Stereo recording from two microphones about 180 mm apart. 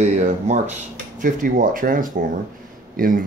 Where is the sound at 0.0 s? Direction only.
40° right (ahead or behind).